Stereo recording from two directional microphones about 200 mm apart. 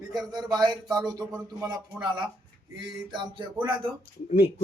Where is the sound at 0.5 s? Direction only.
20° right (ahead or behind).